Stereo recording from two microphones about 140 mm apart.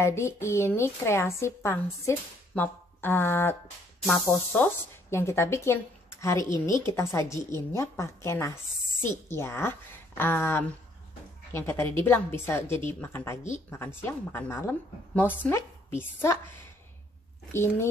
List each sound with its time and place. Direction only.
0.0 s a woman's voice: 20° left (ahead or behind)
5.1 s a woman's voice: 20° left (ahead or behind)